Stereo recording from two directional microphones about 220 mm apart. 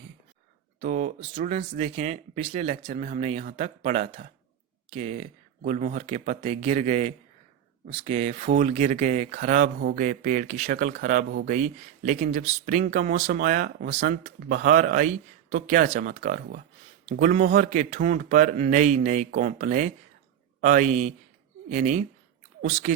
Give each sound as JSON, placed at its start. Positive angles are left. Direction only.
{"t": 0.8, "sound": "speech", "side_deg": -35}